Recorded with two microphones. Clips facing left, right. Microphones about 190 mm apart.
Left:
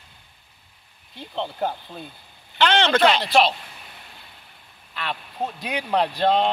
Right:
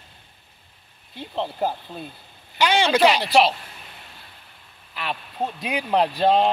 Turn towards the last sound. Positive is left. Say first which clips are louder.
# right 2 dB
turn(degrees=-5)  # may be behind; listen again after turning